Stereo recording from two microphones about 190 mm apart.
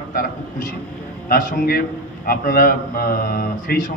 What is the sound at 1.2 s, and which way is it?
A man's voice, 50° left (ahead or behind).